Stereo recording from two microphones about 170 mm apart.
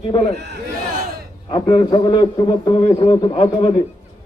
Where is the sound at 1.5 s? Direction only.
25° left (ahead or behind).